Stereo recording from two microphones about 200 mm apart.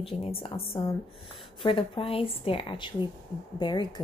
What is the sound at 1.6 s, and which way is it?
Speech, 25° left (ahead or behind).